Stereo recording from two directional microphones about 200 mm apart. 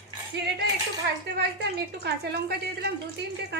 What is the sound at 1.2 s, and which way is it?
Speech, 55° right (ahead or behind).